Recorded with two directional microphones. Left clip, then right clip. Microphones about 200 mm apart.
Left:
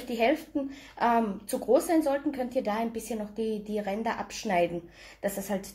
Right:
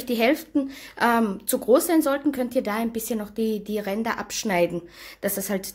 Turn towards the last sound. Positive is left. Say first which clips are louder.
# right 4 dB
turn(degrees=-40)  # may be behind; listen again after turning